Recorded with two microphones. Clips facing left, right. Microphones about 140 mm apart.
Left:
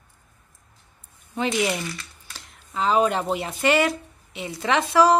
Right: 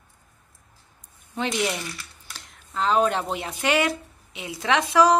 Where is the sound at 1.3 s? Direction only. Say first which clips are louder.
Left 2 dB; centre (ahead or behind).